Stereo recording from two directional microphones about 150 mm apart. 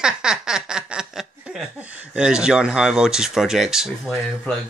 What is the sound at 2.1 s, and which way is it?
Speech, 5° right (ahead or behind).